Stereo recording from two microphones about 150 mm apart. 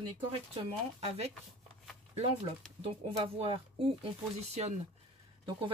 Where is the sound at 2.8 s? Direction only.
45° right (ahead or behind).